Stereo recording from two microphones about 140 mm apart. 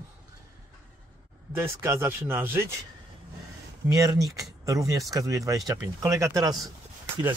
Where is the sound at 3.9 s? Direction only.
25° right (ahead or behind).